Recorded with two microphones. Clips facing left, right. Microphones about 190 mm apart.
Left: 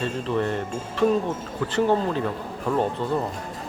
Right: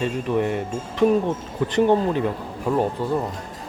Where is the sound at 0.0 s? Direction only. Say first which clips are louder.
Right 3 dB; 15° right (ahead or behind).